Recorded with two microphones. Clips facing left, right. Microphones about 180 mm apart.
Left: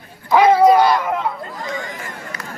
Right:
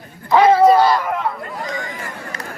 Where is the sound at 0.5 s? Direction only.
15° left (ahead or behind).